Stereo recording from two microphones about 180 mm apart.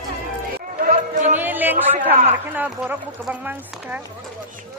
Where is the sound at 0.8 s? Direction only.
45° right (ahead or behind).